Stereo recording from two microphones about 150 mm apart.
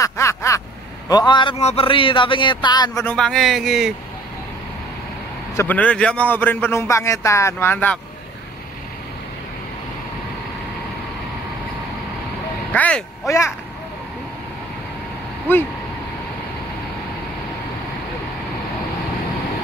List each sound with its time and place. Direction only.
0.0 s vehicle: 20° left (ahead or behind)
1.0 s a man's voice: 30° left (ahead or behind)
3.0 s a man's voice: 10° left (ahead or behind)
5.6 s a man's voice: 10° left (ahead or behind)
12.7 s a man's voice: 5° left (ahead or behind)